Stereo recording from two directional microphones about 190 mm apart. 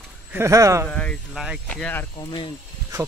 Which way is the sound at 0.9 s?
5° left (ahead or behind).